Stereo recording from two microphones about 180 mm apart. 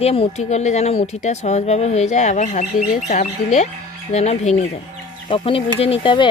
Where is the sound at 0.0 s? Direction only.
35° left (ahead or behind).